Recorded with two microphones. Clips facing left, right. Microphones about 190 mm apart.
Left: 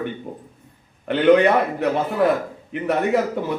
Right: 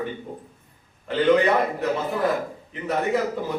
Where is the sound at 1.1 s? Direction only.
65° left (ahead or behind).